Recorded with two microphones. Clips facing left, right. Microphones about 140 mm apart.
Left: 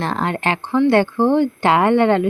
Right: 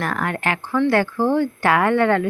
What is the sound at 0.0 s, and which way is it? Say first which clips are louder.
Speech: left 3 dB; 25° left (ahead or behind).